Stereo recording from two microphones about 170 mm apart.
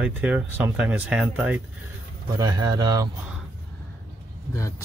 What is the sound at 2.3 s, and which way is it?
Speech, 20° right (ahead or behind).